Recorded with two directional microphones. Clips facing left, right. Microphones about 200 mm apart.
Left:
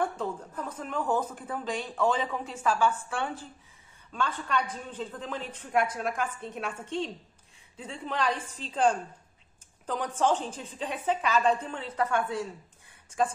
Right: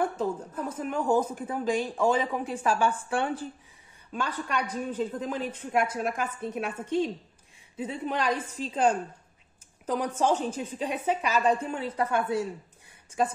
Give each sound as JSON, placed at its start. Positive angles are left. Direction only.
{"t": 0.0, "sound": "a woman's voice", "side_deg": -10}